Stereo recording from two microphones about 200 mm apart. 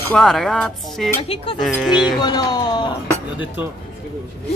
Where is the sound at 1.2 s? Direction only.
30° left (ahead or behind).